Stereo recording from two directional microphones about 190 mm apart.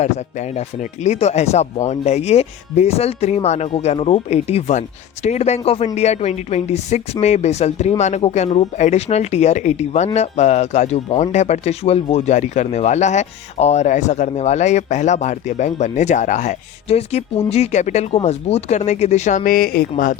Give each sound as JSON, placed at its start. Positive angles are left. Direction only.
{"t": 0.0, "sound": "speech", "side_deg": 35}